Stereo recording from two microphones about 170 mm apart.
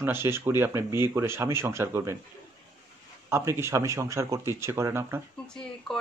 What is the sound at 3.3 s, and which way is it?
Speech, 15° right (ahead or behind).